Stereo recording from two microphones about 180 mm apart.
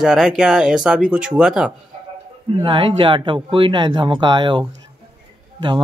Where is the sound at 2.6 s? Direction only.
30° right (ahead or behind).